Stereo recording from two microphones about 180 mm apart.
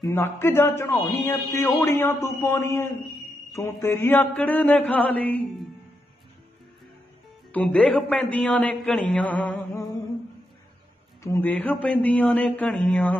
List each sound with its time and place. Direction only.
0.0 s a man's voice: 15° left (ahead or behind)
7.5 s a man's voice: 5° left (ahead or behind)
11.3 s a man's voice: 10° left (ahead or behind)